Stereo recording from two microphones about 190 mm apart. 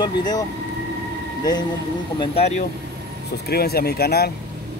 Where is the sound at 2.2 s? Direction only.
30° left (ahead or behind).